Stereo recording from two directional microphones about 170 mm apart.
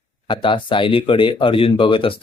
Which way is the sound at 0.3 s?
30° left (ahead or behind).